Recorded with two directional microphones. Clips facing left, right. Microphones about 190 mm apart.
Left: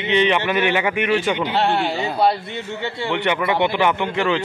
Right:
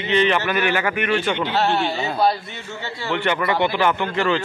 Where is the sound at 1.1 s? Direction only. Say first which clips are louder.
Left 2 dB; 10° left (ahead or behind).